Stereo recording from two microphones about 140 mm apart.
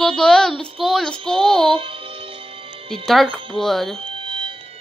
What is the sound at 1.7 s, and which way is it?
Music, 40° right (ahead or behind).